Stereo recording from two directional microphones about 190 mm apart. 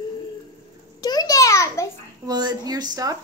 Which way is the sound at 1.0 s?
20° left (ahead or behind).